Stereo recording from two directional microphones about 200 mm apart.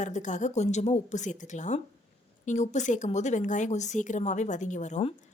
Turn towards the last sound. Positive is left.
turn(degrees=35)  # may be behind; listen again after turning